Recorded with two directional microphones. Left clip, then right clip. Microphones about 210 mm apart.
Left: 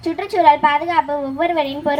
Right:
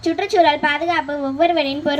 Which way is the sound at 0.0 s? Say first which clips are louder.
Left 1 dB; 25° right (ahead or behind).